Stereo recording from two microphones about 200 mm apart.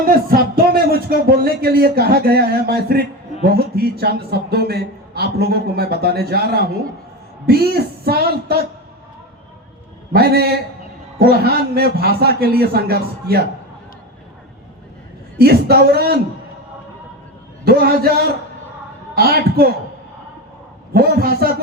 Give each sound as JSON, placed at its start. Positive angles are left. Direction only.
{"t": 0.0, "sound": "a man's voice", "side_deg": -45}
{"t": 10.1, "sound": "a man's voice", "side_deg": -50}
{"t": 15.4, "sound": "a man's voice", "side_deg": -50}
{"t": 17.7, "sound": "a man's voice", "side_deg": -50}
{"t": 20.9, "sound": "a man's voice", "side_deg": -50}